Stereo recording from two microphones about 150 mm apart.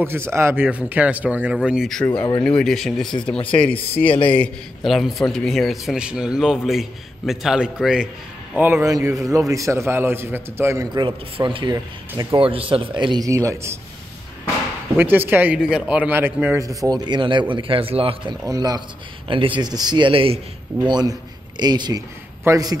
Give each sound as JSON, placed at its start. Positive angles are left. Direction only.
{"t": 0.0, "sound": "a man's voice", "side_deg": -15}
{"t": 8.8, "sound": "a man's voice", "side_deg": -20}
{"t": 11.1, "sound": "speech", "side_deg": -35}
{"t": 15.0, "sound": "speech", "side_deg": -15}
{"t": 16.6, "sound": "speech", "side_deg": -25}
{"t": 18.4, "sound": "a man's voice", "side_deg": -25}